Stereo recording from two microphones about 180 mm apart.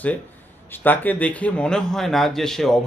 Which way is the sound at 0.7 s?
10° left (ahead or behind).